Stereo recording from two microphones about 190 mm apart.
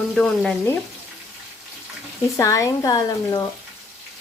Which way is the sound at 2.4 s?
15° left (ahead or behind).